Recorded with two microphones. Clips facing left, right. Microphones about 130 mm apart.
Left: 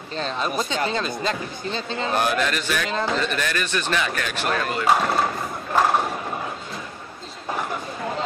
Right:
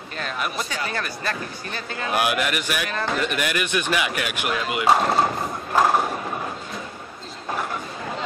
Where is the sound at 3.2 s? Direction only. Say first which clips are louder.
Right 1 dB; 15° right (ahead or behind).